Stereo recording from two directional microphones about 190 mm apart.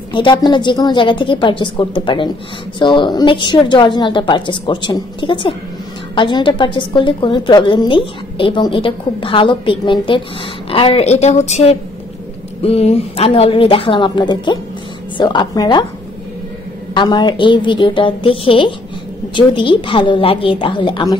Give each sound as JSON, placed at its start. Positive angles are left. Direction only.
{"t": 0.1, "sound": "a woman's voice", "side_deg": 25}
{"t": 16.9, "sound": "a woman's voice", "side_deg": 25}